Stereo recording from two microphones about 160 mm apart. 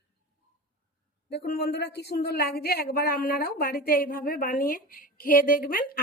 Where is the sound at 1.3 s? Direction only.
90° left.